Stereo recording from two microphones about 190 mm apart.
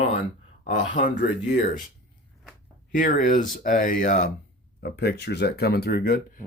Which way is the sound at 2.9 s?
45° left (ahead or behind).